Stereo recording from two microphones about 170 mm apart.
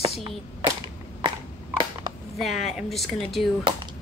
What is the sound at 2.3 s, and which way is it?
A woman's voice, centre (ahead or behind).